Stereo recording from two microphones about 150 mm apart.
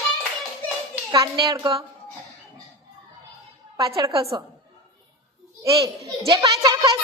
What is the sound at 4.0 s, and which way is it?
Speech, 20° right (ahead or behind).